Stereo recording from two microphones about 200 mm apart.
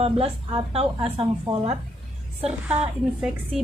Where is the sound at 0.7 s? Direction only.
30° right (ahead or behind).